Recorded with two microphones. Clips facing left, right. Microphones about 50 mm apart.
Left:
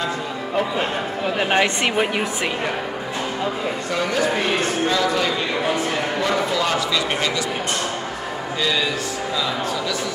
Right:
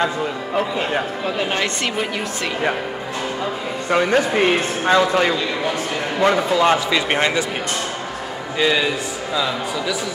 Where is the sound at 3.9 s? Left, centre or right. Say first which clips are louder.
Right 5 dB; right.